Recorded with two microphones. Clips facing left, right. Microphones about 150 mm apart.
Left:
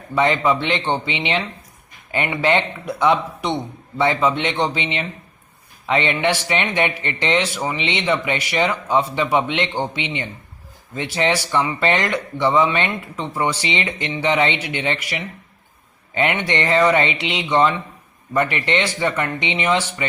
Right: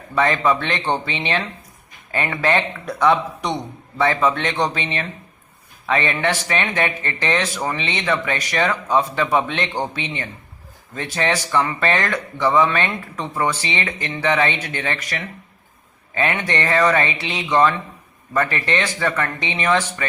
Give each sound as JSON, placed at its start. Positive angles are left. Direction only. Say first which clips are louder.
{"t": 0.2, "sound": "speech", "louder": "left 1 dB", "side_deg": 20}
{"t": 16.1, "sound": "speech", "louder": "left 1 dB", "side_deg": 20}